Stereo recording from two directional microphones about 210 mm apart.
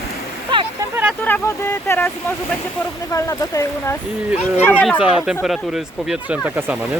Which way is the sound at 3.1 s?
15° left (ahead or behind).